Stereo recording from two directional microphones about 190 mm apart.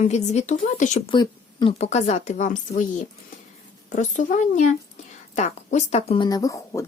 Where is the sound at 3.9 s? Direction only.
40° left (ahead or behind); by 6.8 s 15° left (ahead or behind).